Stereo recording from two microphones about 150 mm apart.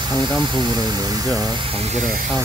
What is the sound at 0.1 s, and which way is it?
Speech, 30° right (ahead or behind).